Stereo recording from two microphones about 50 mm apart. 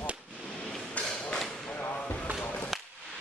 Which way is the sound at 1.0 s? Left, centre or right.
Left.